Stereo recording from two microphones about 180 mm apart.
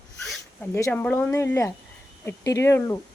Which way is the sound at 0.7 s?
15° left (ahead or behind).